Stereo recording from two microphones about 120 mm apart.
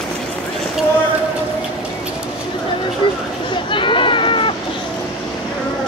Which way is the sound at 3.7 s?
45° left (ahead or behind).